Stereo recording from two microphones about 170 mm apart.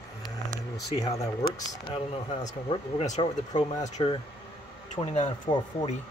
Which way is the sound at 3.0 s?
45° left (ahead or behind).